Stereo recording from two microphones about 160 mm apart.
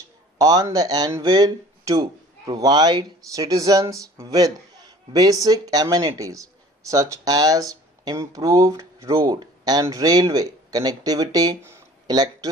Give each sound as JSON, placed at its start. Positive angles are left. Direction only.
{"t": 0.3, "sound": "speech", "side_deg": -20}